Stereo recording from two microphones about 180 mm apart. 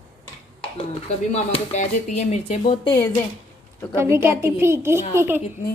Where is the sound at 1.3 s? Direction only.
40° left (ahead or behind); by 3.1 s 25° left (ahead or behind).